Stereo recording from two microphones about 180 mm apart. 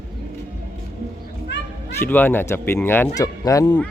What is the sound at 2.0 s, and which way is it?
Speech, 10° left (ahead or behind).